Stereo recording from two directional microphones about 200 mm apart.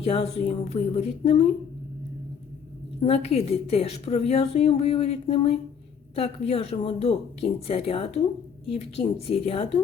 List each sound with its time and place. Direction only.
0.0 s a woman's voice: 30° left (ahead or behind)
3.0 s a woman's voice: 30° left (ahead or behind)